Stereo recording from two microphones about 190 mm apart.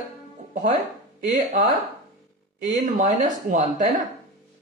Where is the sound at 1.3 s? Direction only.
40° right (ahead or behind).